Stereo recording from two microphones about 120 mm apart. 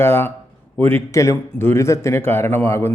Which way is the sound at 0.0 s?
20° left (ahead or behind).